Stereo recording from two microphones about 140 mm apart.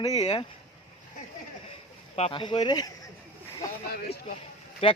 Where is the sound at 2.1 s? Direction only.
50° left (ahead or behind).